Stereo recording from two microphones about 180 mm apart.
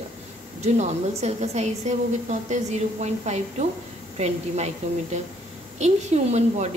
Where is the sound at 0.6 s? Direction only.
40° right (ahead or behind).